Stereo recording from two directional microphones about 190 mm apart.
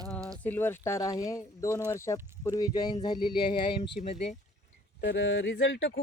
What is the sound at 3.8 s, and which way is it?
Speech, 35° left (ahead or behind).